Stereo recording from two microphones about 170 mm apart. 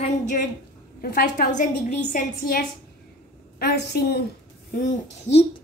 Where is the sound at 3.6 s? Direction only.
80° left.